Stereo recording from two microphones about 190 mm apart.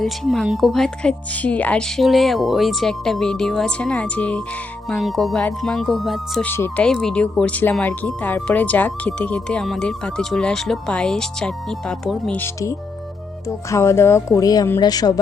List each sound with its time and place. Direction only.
0.0 s speech: centre (ahead or behind); by 15.2 s 20° left (ahead or behind)